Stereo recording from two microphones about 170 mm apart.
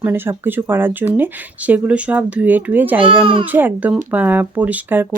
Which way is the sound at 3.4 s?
10° right (ahead or behind).